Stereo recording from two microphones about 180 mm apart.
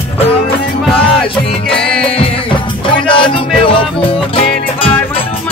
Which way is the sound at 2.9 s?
25° left (ahead or behind).